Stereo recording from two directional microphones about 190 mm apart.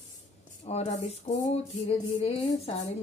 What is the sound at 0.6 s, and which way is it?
Music, 35° left (ahead or behind).